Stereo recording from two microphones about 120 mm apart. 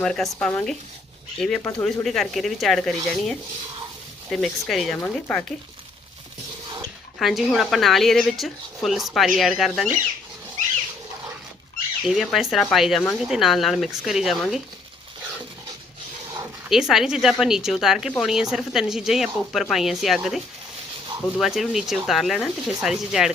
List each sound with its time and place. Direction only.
0.0 s speech: 5° left (ahead or behind)
1.6 s speech: 20° left (ahead or behind)
2.0 s speech: centre (ahead or behind)
4.3 s speech: centre (ahead or behind)
7.2 s speech: centre (ahead or behind)
12.0 s speech: centre (ahead or behind)
16.6 s speech: 5° right (ahead or behind)
21.4 s speech: centre (ahead or behind)